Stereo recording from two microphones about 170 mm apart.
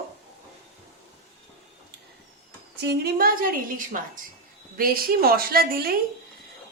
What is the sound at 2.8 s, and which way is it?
A woman's voice, 70° right (ahead or behind).